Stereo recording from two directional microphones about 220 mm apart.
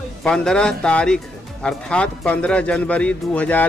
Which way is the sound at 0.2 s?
5° left (ahead or behind).